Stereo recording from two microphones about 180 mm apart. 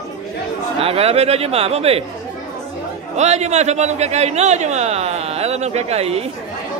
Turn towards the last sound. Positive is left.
turn(degrees=-35)  # may be behind; listen again after turning